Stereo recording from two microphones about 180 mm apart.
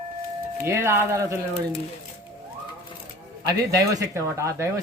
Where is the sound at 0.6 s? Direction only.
15° right (ahead or behind).